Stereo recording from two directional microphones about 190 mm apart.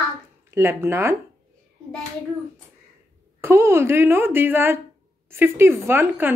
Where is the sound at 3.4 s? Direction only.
10° right (ahead or behind).